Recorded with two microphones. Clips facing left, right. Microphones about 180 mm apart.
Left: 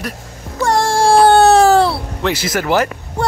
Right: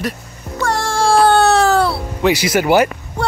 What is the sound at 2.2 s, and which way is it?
Speech, 15° right (ahead or behind).